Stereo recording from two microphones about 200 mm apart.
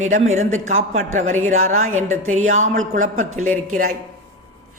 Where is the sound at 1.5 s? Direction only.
90° right.